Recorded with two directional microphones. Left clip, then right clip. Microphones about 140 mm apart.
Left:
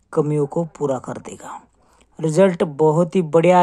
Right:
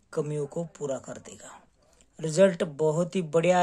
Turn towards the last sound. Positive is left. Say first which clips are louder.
# left 9 dB
turn(degrees=25)  # may be behind; listen again after turning